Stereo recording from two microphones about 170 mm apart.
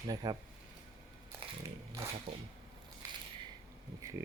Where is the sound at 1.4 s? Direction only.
30° right (ahead or behind).